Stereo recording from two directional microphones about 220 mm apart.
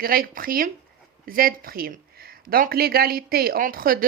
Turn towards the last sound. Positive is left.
turn(degrees=-40)  # may be behind; listen again after turning